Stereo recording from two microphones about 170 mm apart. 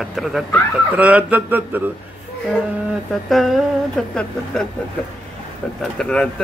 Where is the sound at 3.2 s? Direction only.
Centre (ahead or behind).